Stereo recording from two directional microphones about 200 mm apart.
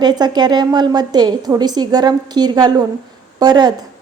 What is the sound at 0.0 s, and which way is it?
A woman's voice, 20° right (ahead or behind).